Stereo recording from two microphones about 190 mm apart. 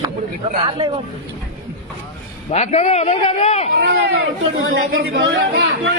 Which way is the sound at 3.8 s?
60° right (ahead or behind).